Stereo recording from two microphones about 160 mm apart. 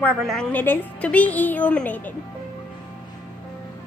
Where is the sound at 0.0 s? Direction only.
5° left (ahead or behind).